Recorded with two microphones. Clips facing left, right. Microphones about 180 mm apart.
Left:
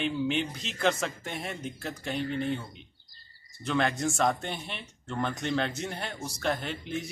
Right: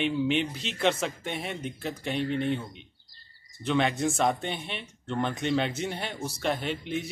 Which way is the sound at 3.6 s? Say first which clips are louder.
Right 2 dB; 5° right (ahead or behind).